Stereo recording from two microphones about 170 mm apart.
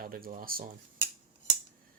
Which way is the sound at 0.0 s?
55° right (ahead or behind).